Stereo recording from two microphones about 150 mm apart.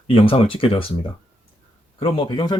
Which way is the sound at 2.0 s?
30° left (ahead or behind).